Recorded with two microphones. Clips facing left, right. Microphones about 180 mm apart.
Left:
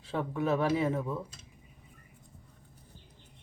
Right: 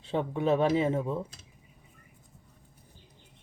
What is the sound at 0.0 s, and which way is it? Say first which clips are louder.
Speech: right 3 dB; 25° right (ahead or behind).